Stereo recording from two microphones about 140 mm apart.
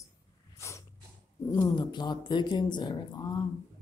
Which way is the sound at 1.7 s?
30° left (ahead or behind).